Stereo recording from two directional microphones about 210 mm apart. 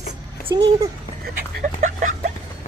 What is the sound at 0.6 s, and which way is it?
Speech, 25° right (ahead or behind).